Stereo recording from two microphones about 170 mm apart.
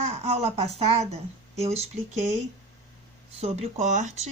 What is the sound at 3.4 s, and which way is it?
Speech, 40° right (ahead or behind).